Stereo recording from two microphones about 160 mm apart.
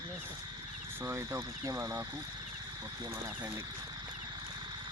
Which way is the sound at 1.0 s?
15° right (ahead or behind).